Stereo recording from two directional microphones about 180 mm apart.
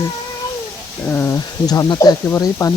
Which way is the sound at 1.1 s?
15° left (ahead or behind).